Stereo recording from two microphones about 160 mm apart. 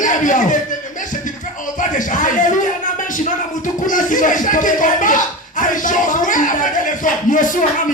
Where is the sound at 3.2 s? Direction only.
55° left (ahead or behind).